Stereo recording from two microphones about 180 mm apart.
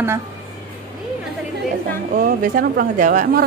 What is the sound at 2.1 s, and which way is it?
Speech, 50° right (ahead or behind).